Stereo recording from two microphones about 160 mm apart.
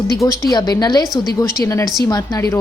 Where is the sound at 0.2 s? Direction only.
25° left (ahead or behind).